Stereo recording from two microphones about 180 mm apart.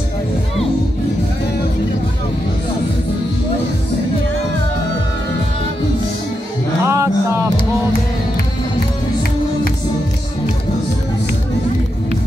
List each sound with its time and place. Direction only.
6.8 s music: 15° right (ahead or behind)